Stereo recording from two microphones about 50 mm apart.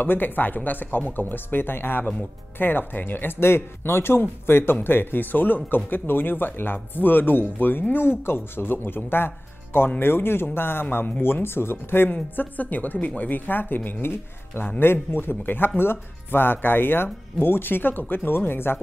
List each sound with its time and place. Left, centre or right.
0.0 s speech: left